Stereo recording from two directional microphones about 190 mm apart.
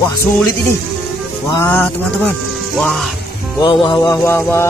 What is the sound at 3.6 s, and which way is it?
Music, 25° left (ahead or behind).